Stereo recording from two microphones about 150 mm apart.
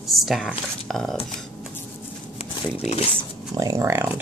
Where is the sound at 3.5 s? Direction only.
25° right (ahead or behind).